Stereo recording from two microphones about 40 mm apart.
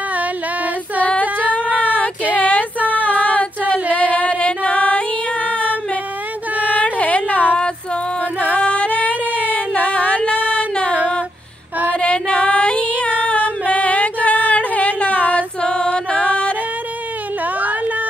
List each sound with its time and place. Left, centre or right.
2.3 s a sound: left
3.1 s female singing: left
3.9 s music: left
6.8 s a sound: left
8.5 s music: left
11.9 s female singing: left
15.7 s music: left